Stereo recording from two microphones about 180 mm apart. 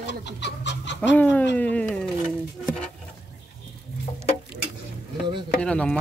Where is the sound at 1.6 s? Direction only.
5° left (ahead or behind).